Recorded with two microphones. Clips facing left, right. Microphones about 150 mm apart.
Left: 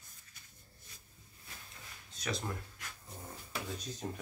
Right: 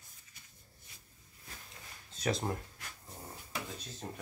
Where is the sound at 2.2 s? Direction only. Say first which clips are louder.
Right 5 dB; 40° right (ahead or behind).